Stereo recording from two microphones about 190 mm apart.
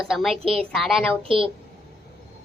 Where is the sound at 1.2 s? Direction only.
30° right (ahead or behind).